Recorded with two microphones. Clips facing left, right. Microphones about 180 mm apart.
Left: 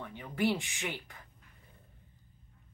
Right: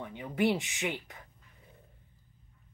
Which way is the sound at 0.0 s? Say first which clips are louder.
Right 3 dB; 15° right (ahead or behind).